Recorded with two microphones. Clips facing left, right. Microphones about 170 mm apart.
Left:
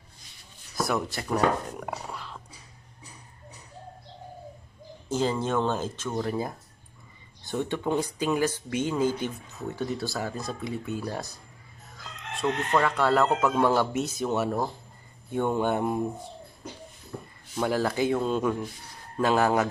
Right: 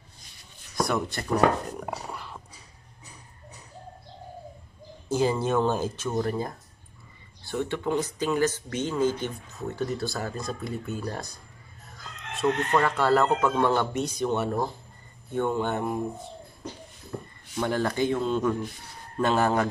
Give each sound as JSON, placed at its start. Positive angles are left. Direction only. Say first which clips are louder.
{"t": 0.7, "sound": "speech", "louder": "right 1 dB", "side_deg": 0}
{"t": 1.7, "sound": "a sound", "louder": "right 1 dB", "side_deg": 0}
{"t": 5.1, "sound": "speech", "louder": "right 2 dB", "side_deg": -10}
{"t": 6.2, "sound": "speech", "louder": "even", "side_deg": 5}
{"t": 7.4, "sound": "speech", "louder": "even", "side_deg": 15}
{"t": 9.5, "sound": "speech", "louder": "right 1 dB", "side_deg": 0}
{"t": 12.4, "sound": "speech", "louder": "right 1 dB", "side_deg": 0}
{"t": 15.3, "sound": "speech", "louder": "left 1 dB", "side_deg": 15}
{"t": 17.1, "sound": "a sound", "louder": "right 3 dB", "side_deg": -55}
{"t": 17.6, "sound": "speech", "louder": "even", "side_deg": 5}